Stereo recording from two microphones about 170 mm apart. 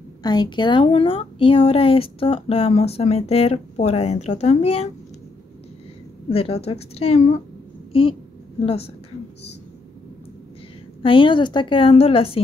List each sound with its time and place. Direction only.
0.2 s speech: 25° left (ahead or behind)
6.2 s speech: 35° left (ahead or behind)
7.9 s a woman's voice: 30° left (ahead or behind)
11.0 s speech: 30° left (ahead or behind)